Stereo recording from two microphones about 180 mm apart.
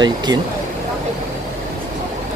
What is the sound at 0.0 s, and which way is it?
Speech, 25° right (ahead or behind).